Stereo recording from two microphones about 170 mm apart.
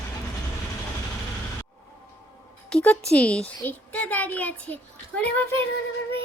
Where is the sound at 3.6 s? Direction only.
10° left (ahead or behind).